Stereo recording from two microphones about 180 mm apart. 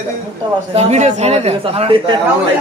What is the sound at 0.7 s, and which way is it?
A man's voice, 35° right (ahead or behind).